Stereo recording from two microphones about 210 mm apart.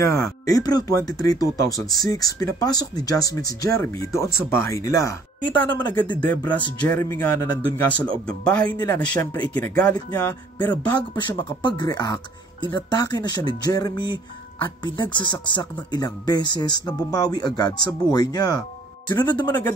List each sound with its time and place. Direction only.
0.5 s speech: 15° left (ahead or behind)
9.6 s speech: 5° left (ahead or behind)